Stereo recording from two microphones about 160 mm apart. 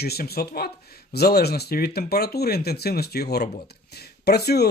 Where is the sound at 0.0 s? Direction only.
80° left.